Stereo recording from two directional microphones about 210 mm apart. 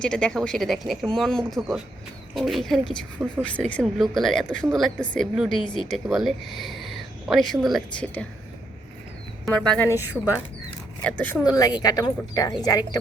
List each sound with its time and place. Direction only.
0.0 s speech: 5° left (ahead or behind)
5.6 s speech: 20° left (ahead or behind)
5.9 s speech: centre (ahead or behind)
9.5 s speech: 5° left (ahead or behind)
11.0 s speech: 5° left (ahead or behind)
11.4 s speech: 20° left (ahead or behind)